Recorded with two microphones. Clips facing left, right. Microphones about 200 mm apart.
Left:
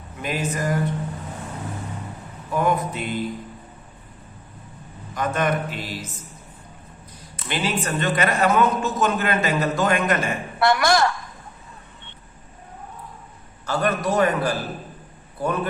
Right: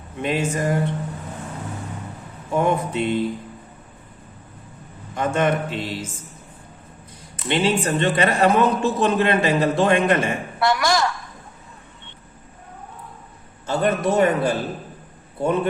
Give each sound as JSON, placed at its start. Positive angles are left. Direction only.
{"t": 0.2, "sound": "a man's voice", "side_deg": -25}
{"t": 2.5, "sound": "a man's voice", "side_deg": -25}
{"t": 5.1, "sound": "a man's voice", "side_deg": -25}
{"t": 7.4, "sound": "a man's voice", "side_deg": -25}
{"t": 10.6, "sound": "a sound", "side_deg": 60}
{"t": 13.7, "sound": "a man's voice", "side_deg": -25}